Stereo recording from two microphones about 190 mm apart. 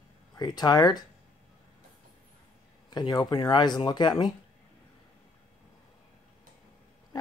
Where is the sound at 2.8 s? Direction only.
20° left (ahead or behind).